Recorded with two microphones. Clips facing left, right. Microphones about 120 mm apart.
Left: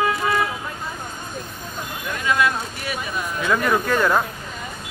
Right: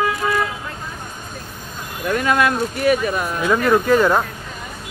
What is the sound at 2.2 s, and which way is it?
Speech, 55° right (ahead or behind).